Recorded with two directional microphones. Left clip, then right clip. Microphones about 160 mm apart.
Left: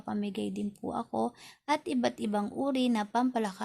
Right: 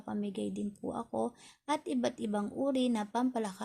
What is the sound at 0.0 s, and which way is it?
A woman's voice, 15° left (ahead or behind).